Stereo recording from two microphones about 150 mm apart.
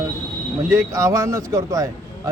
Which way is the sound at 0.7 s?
20° right (ahead or behind).